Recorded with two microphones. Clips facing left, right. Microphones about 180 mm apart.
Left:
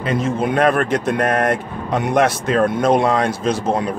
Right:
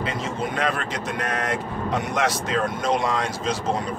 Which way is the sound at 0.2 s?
55° left (ahead or behind).